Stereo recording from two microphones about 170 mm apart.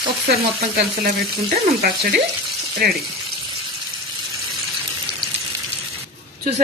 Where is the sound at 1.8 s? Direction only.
65° right (ahead or behind).